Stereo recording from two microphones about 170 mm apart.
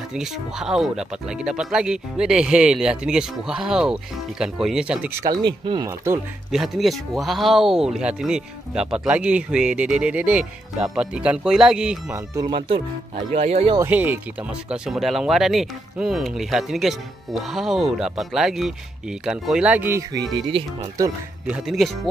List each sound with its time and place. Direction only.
0.1 s speech: 5° right (ahead or behind)
5.2 s speech: 25° right (ahead or behind)
6.5 s speech: centre (ahead or behind)
12.1 s speech: 25° right (ahead or behind)
13.7 s speech: 10° right (ahead or behind)
20.3 s speech: 35° right (ahead or behind)
21.5 s speech: 5° right (ahead or behind)